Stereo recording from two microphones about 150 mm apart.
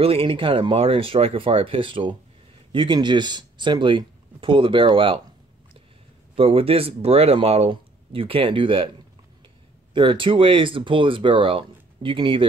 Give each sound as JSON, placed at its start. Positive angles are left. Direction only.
{"t": 0.0, "sound": "speech", "side_deg": -40}
{"t": 6.3, "sound": "speech", "side_deg": -40}
{"t": 9.9, "sound": "speech", "side_deg": -35}